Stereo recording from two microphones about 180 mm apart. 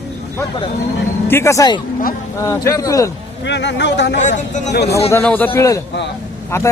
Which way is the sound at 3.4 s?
75° left (ahead or behind).